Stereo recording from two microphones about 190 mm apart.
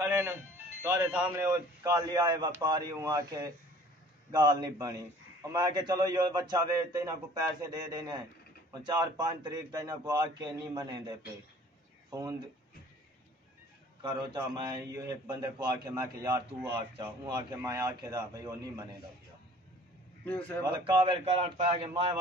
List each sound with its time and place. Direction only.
0.0 s music: 15° right (ahead or behind)
0.8 s a man's voice: 10° right (ahead or behind)
14.1 s a man's voice: 20° right (ahead or behind)
20.2 s a man's voice: 10° left (ahead or behind)
20.6 s a man's voice: 25° right (ahead or behind)